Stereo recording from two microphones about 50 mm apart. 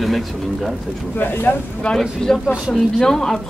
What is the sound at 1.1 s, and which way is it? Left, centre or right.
Speech, left.